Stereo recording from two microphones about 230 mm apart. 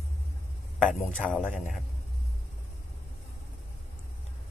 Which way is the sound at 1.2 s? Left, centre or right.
Centre.